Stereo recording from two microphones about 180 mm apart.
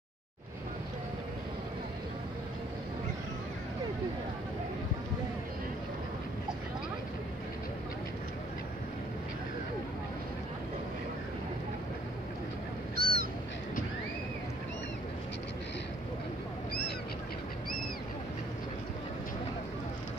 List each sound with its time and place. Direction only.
12.9 s goose: 55° right (ahead or behind)